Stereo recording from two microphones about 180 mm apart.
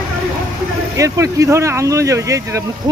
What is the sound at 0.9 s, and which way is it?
Speech, 15° right (ahead or behind).